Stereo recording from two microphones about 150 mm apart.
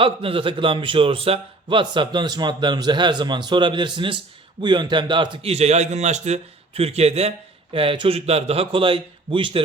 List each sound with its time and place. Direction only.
0.0 s a man's voice: 35° right (ahead or behind)